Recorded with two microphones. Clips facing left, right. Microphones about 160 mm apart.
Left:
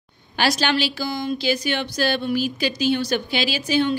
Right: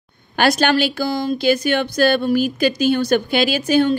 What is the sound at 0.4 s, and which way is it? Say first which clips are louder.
A woman's voice: right 5 dB; 50° right (ahead or behind).